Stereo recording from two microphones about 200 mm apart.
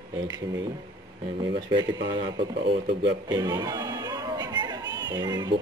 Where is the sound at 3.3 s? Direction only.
20° right (ahead or behind).